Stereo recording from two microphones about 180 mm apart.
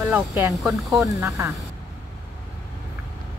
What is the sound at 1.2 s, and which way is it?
Speech, 15° right (ahead or behind).